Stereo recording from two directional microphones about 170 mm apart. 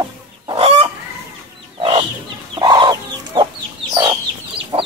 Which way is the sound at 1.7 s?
30° right (ahead or behind).